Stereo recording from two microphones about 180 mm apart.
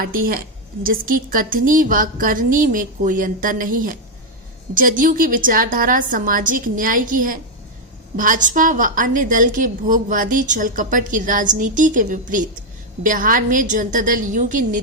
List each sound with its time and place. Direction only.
0.0 s a woman's voice: 50° right (ahead or behind)